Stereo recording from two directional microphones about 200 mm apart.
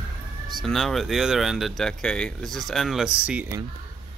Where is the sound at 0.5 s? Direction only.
Centre (ahead or behind).